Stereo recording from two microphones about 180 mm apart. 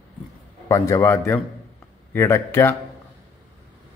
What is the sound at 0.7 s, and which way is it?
A man's voice, 15° left (ahead or behind).